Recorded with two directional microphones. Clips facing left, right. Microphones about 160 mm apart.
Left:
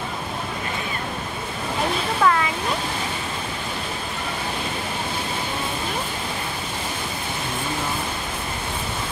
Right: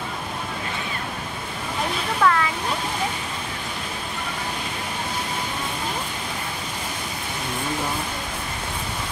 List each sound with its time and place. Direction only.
2.2 s waterfall: 25° left (ahead or behind)